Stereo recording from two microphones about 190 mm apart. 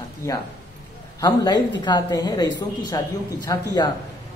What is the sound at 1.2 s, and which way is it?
Speech, 20° left (ahead or behind).